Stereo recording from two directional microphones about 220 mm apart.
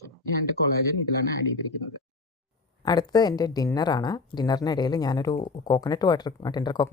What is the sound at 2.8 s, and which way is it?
Speech, 20° left (ahead or behind).